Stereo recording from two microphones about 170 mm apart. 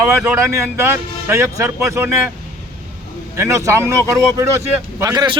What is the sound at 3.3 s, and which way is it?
A man's voice, 15° right (ahead or behind).